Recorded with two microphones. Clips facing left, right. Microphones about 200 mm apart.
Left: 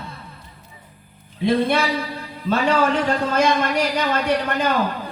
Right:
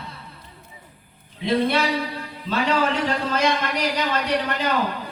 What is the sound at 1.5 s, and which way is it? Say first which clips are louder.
Snicker: left 2 dB; 50° left (ahead or behind).